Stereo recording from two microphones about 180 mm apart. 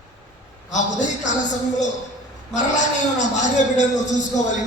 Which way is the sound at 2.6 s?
40° left (ahead or behind).